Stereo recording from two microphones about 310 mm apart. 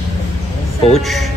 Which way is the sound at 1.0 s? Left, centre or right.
Centre.